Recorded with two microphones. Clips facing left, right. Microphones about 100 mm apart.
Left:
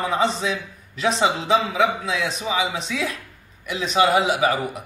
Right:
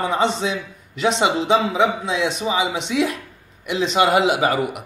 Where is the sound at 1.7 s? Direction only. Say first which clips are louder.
Right 2 dB; 30° right (ahead or behind).